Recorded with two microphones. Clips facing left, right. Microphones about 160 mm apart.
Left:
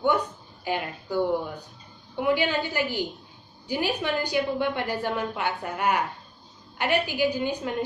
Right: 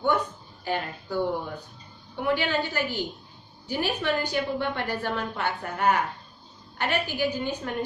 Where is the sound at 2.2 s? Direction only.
15° left (ahead or behind).